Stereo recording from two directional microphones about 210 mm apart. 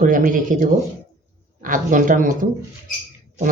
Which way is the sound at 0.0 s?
40° right (ahead or behind).